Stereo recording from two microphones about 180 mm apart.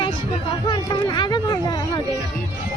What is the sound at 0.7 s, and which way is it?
Speech, 25° left (ahead or behind).